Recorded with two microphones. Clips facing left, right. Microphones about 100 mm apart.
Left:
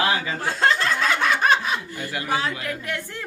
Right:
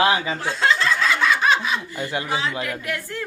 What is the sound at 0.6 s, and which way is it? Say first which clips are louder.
Snicker: right 1 dB; 50° left (ahead or behind).